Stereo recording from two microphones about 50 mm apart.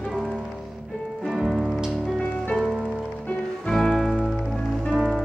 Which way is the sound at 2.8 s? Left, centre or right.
Centre.